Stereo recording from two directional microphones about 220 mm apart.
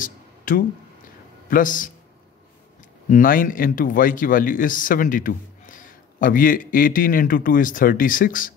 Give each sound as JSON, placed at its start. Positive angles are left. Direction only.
{"t": 0.0, "sound": "a sound", "side_deg": 40}
{"t": 1.5, "sound": "speech", "side_deg": 35}
{"t": 3.1, "sound": "speech", "side_deg": 40}